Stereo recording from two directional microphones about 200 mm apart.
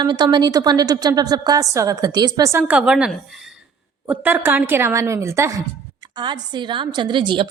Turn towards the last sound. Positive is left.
turn(degrees=-25)  # may be behind; listen again after turning